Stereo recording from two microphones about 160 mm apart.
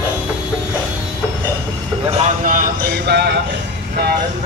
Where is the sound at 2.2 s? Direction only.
50° right (ahead or behind); by 3.4 s 90° right.